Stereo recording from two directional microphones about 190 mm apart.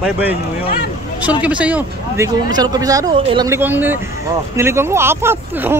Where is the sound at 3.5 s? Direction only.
10° right (ahead or behind).